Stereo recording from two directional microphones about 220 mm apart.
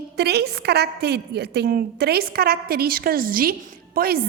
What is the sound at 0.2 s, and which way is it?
A woman's voice, 50° right (ahead or behind).